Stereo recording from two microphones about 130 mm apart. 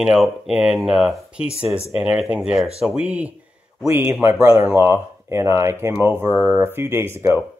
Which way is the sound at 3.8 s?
25° right (ahead or behind).